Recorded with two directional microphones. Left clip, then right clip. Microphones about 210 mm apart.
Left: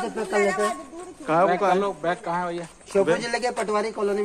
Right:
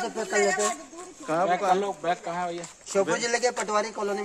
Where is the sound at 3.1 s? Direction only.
10° right (ahead or behind).